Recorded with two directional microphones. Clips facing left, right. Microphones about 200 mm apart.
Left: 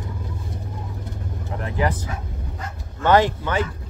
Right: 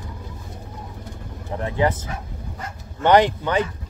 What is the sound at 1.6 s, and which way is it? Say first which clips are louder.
Speech: right 3 dB; 25° right (ahead or behind).